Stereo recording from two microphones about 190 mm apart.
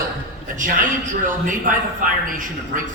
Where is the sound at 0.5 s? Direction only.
45° right (ahead or behind).